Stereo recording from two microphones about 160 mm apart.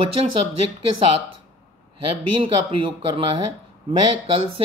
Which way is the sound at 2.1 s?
30° right (ahead or behind).